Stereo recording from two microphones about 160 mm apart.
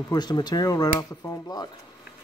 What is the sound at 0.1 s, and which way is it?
Speech, 25° left (ahead or behind).